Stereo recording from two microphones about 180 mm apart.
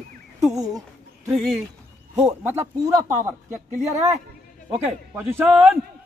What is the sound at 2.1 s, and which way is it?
Speech, 15° right (ahead or behind).